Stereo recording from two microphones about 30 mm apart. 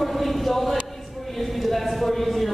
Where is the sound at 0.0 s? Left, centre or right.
Centre.